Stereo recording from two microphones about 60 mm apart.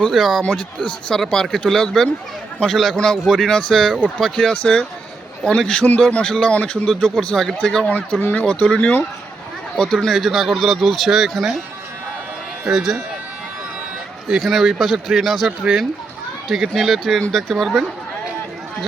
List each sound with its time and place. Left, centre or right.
0.0 s speech: centre
0.4 s speech: centre
6.9 s speech: centre
7.9 s speech: left
8.4 s speech: centre
10.2 s speech: centre
12.6 s speech: centre
14.3 s speech: centre
16.5 s speech: centre
17.5 s speech: centre